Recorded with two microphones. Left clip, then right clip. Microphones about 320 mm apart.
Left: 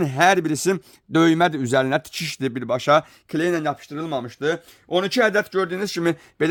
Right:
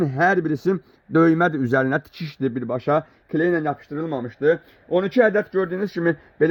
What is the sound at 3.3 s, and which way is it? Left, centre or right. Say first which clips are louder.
Speech: right 1 dB; left.